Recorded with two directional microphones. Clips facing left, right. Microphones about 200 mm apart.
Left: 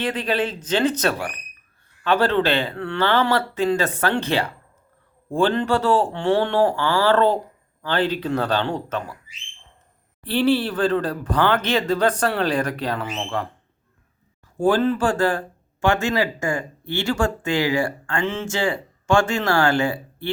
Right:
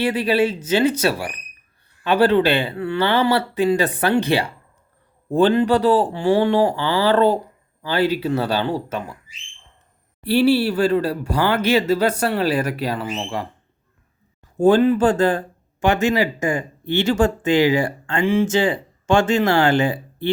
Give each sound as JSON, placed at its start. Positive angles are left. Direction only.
{"t": 0.0, "sound": "speech", "side_deg": -10}
{"t": 10.2, "sound": "speech", "side_deg": -10}
{"t": 14.6, "sound": "speech", "side_deg": -20}